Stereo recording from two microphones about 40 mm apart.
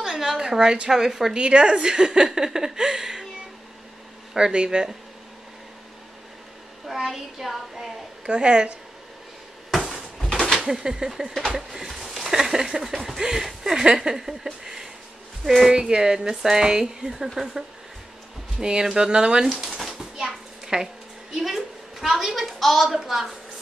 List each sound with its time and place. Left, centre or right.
0.0 s speech: centre
1.3 s speech: right; by 3.3 s centre
4.4 s speech: right
6.9 s speech: centre
8.3 s speech: right
9.7 s a sound: centre
10.6 s speech: centre
13.8 s a sound: centre
15.7 s speech: right
18.6 s speech: centre
19.5 s a sound: centre
20.6 s a woman's voice: centre